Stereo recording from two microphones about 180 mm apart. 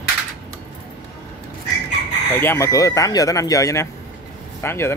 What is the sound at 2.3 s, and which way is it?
Speech, 15° left (ahead or behind).